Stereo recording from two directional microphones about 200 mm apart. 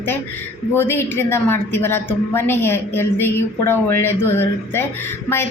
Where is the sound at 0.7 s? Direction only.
10° left (ahead or behind).